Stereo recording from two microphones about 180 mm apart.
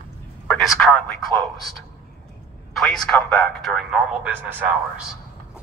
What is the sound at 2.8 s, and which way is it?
Speech, 5° left (ahead or behind).